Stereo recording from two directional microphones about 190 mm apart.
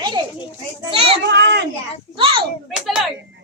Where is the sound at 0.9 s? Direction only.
30° right (ahead or behind).